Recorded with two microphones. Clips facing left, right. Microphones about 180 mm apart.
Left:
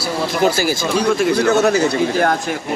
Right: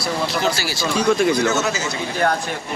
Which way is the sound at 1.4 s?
60° left (ahead or behind).